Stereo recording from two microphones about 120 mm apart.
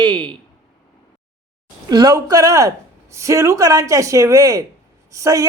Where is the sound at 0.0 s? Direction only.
40° right (ahead or behind).